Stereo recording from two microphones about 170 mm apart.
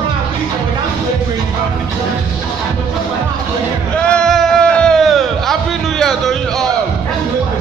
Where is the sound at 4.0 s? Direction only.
5° left (ahead or behind).